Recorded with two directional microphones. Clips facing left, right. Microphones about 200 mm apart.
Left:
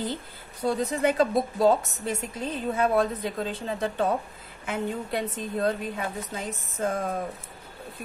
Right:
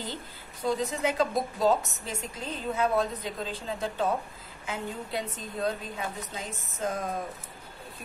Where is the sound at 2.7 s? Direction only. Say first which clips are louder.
Left 3 dB; 55° left (ahead or behind).